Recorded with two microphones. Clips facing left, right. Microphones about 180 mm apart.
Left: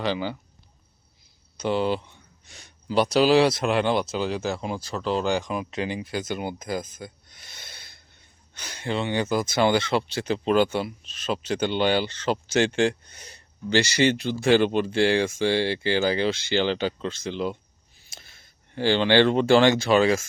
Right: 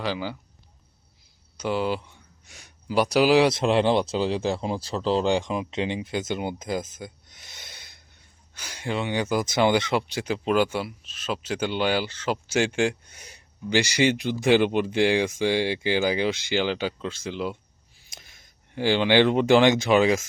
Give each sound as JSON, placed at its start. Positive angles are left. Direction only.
{"t": 0.0, "sound": "speech", "side_deg": -5}
{"t": 1.5, "sound": "speech", "side_deg": -5}
{"t": 3.6, "sound": "speech", "side_deg": -30}